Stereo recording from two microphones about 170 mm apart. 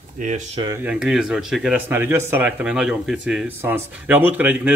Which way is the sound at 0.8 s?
5° right (ahead or behind).